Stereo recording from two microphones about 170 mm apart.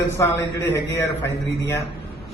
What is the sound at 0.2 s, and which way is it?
A man's voice, 15° left (ahead or behind).